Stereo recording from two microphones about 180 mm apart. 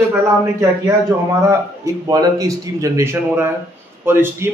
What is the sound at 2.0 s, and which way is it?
A man's voice, 20° right (ahead or behind).